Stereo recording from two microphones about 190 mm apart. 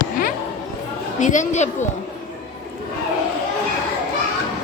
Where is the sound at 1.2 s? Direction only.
40° left (ahead or behind).